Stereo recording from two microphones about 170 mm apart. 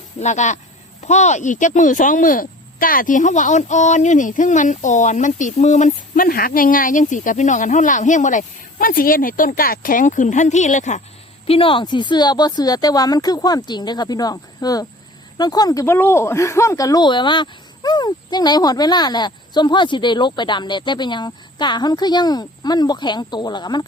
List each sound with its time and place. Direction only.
0.2 s speech: 45° left (ahead or behind)
11.4 s speech: 30° left (ahead or behind)